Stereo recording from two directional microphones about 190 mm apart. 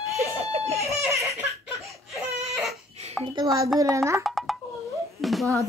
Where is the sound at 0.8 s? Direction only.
15° right (ahead or behind).